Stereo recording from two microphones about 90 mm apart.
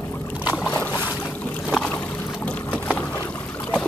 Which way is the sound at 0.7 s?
20° left (ahead or behind).